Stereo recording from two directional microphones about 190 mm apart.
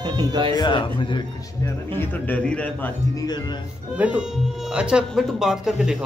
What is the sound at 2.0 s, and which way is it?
Speech, 10° left (ahead or behind).